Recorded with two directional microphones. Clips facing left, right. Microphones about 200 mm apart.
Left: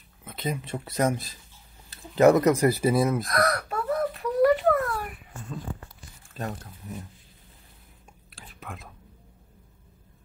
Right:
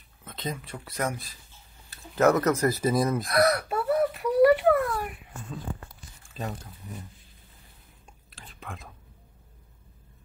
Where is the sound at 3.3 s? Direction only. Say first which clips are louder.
Right 3 dB; 10° right (ahead or behind).